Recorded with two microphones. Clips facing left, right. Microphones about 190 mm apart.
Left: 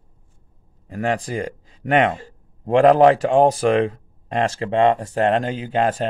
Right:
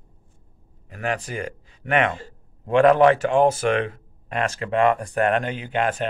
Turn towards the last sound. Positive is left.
turn(degrees=35)  # may be behind; listen again after turning